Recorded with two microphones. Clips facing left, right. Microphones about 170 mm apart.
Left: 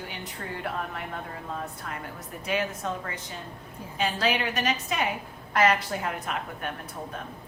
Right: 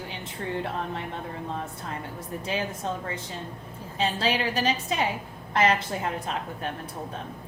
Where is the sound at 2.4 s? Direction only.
30° right (ahead or behind).